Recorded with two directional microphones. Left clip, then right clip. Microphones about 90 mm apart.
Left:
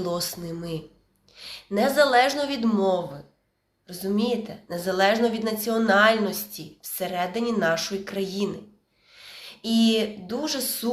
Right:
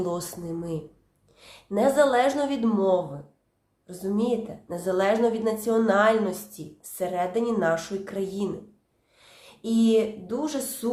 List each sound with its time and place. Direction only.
0.0 s a woman's voice: 50° right (ahead or behind)